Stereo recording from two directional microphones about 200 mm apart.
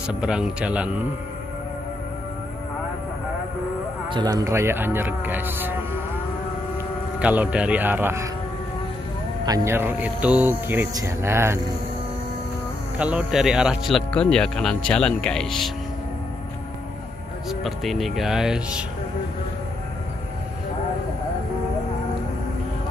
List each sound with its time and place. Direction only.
0.0 s speech: 5° right (ahead or behind)
4.1 s speech: 20° right (ahead or behind)
7.2 s speech: 5° right (ahead or behind)
9.5 s speech: 10° right (ahead or behind)
12.9 s speech: 5° right (ahead or behind)
17.5 s speech: centre (ahead or behind)